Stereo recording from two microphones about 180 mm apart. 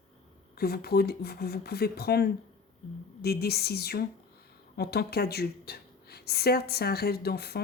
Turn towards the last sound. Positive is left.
turn(degrees=60)  # may be behind; listen again after turning